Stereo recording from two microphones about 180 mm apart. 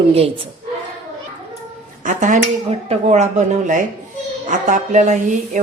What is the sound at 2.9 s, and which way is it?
A woman's voice, 40° right (ahead or behind).